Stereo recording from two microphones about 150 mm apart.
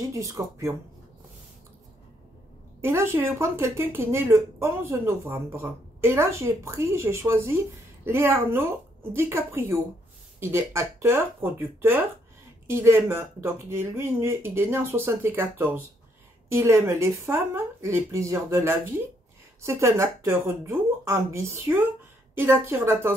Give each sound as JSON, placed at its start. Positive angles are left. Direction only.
{"t": 0.1, "sound": "speech", "side_deg": -20}
{"t": 2.8, "sound": "speech", "side_deg": -15}
{"t": 12.6, "sound": "speech", "side_deg": -15}